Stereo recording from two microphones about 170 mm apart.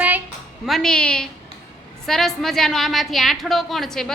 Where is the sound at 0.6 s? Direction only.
Centre (ahead or behind).